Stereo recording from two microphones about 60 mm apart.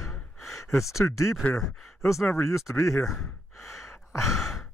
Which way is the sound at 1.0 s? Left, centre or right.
Left.